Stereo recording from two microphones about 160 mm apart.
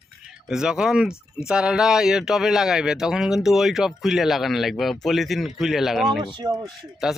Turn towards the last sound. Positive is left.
turn(degrees=0)  # may be behind; listen again after turning